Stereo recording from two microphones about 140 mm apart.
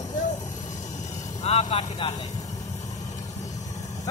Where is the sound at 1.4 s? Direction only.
45° left (ahead or behind).